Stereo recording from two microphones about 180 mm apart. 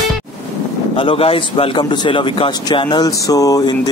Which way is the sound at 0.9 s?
30° left (ahead or behind).